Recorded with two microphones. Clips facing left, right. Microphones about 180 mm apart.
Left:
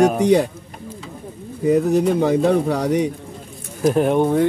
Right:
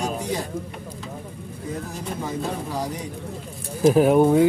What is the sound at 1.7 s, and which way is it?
Speech, 70° left (ahead or behind).